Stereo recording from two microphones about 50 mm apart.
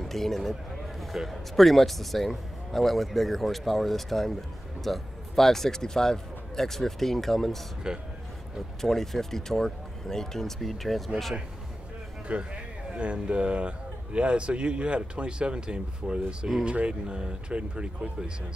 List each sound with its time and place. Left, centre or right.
0.0 s a man's voice: centre
7.8 s speech: centre
8.8 s a man's voice: centre
12.3 s speech: right